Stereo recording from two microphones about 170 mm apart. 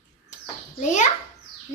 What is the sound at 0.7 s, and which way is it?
Speech, 45° left (ahead or behind).